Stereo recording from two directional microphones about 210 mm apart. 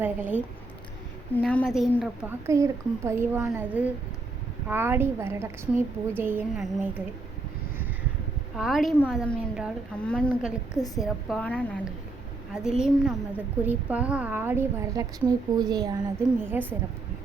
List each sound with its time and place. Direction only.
0.0 s a woman's voice: 10° right (ahead or behind)
1.4 s a woman's voice: 5° left (ahead or behind); by 7.0 s 10° right (ahead or behind)
8.5 s a woman's voice: centre (ahead or behind)
10.8 s a woman's voice: 15° left (ahead or behind)
11.0 s a woman's voice: 5° left (ahead or behind)